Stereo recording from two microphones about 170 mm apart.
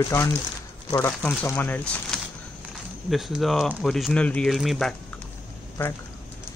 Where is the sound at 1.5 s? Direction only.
10° left (ahead or behind).